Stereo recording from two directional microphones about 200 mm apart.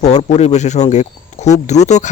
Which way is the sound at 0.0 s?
35° left (ahead or behind).